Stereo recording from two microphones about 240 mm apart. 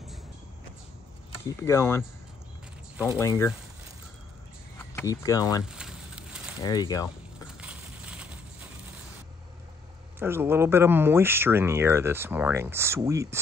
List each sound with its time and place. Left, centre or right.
1.4 s speech: centre
3.2 s speech: centre
4.7 s speech: centre
5.6 s a sound: centre
6.6 s speech: centre
7.6 s a sound: centre
10.1 s speech: centre